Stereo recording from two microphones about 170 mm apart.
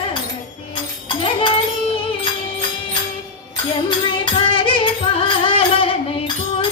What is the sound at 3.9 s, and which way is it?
Music, 25° left (ahead or behind).